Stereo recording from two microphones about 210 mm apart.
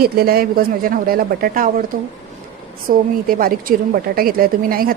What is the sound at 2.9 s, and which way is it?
Speech, 45° right (ahead or behind).